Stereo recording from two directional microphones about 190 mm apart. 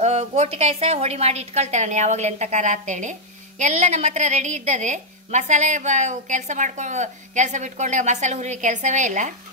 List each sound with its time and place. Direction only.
0.0 s a woman's voice: 35° right (ahead or behind)